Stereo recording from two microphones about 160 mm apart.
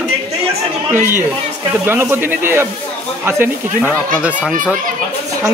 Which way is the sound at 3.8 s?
15° left (ahead or behind).